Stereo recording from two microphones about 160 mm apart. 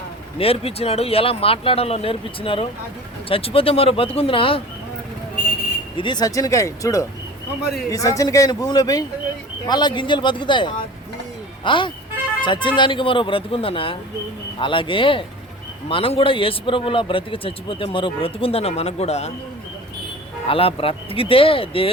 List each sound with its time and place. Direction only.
0.3 s a man's voice: 40° left (ahead or behind)
6.0 s a man's voice: 25° left (ahead or behind); by 19.3 s 40° left (ahead or behind)
20.5 s a man's voice: 35° left (ahead or behind)